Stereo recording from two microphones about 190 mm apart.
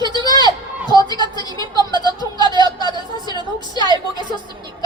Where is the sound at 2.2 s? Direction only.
25° right (ahead or behind).